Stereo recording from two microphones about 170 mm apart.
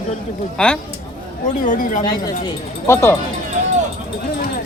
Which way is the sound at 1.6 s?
50° left (ahead or behind).